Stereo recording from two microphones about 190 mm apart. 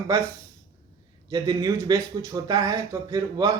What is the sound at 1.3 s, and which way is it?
A man's voice, 20° right (ahead or behind).